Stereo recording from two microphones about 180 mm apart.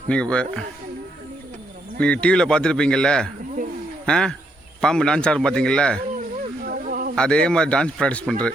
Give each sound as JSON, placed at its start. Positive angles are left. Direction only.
{"t": 0.1, "sound": "speech", "side_deg": 5}
{"t": 2.2, "sound": "speech", "side_deg": 5}
{"t": 6.1, "sound": "a sound", "side_deg": -50}
{"t": 7.2, "sound": "speech", "side_deg": 5}